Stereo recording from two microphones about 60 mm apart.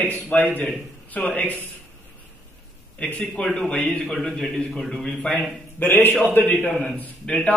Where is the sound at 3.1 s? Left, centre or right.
Left.